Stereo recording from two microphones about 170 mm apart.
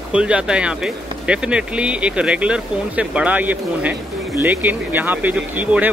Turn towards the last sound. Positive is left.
turn(degrees=-10)  # may be behind; listen again after turning